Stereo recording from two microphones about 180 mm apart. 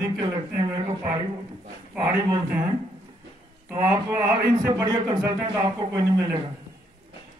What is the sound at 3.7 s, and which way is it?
Speech, 15° right (ahead or behind).